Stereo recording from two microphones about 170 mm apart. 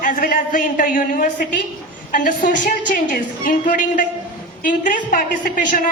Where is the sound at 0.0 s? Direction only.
55° left (ahead or behind).